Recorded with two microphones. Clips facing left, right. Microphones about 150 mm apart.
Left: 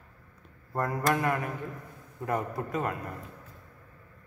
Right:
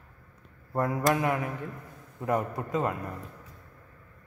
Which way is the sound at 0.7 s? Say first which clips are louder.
Right 2 dB; 5° right (ahead or behind).